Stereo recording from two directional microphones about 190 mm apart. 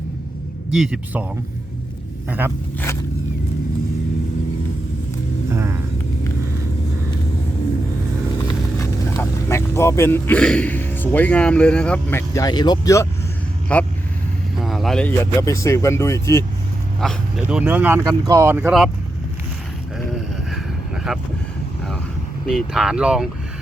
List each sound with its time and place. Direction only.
0.7 s speech: 5° right (ahead or behind)
5.5 s vehicle: 15° right (ahead or behind)
8.4 s speech: 20° left (ahead or behind)
12.3 s speech: 20° left (ahead or behind)
17.0 s speech: centre (ahead or behind)
18.0 s speech: 20° right (ahead or behind)
20.5 s vehicle: centre (ahead or behind)
22.4 s speech: centre (ahead or behind)